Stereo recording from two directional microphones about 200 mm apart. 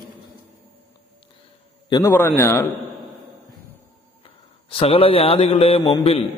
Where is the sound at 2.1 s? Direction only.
10° left (ahead or behind).